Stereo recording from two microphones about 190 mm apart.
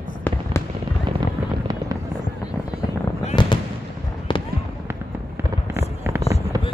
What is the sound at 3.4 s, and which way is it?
Fireworks, 25° left (ahead or behind).